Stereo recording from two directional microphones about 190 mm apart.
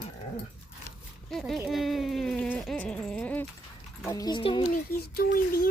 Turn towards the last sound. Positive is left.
turn(degrees=50)  # may be behind; listen again after turning